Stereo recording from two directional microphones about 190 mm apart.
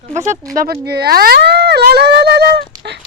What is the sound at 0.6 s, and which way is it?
Speech, 55° right (ahead or behind).